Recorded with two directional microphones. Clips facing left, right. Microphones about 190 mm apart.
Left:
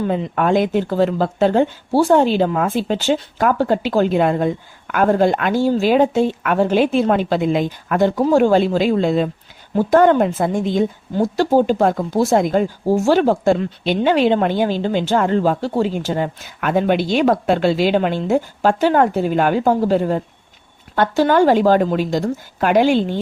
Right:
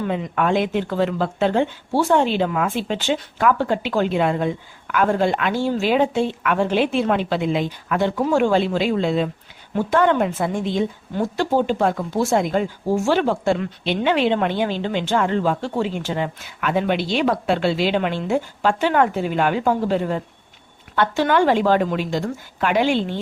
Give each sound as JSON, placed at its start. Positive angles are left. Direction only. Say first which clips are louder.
{"t": 0.0, "sound": "a woman's voice", "louder": "left 3 dB", "side_deg": 35}